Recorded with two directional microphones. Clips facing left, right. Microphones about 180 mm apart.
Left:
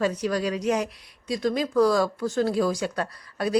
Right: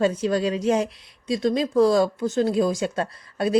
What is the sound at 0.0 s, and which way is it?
Speech, 25° right (ahead or behind).